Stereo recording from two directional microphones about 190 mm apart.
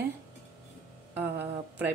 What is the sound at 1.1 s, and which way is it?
Speech, 10° right (ahead or behind).